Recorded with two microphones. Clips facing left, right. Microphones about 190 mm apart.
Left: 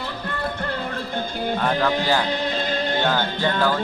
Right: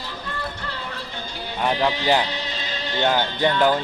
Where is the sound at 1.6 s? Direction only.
15° right (ahead or behind).